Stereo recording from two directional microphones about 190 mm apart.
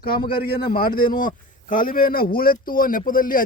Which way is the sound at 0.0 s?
50° left (ahead or behind).